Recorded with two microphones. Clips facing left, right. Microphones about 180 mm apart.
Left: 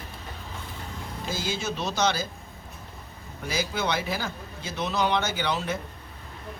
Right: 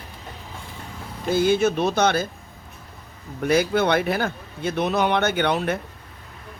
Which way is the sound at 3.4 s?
60° right (ahead or behind).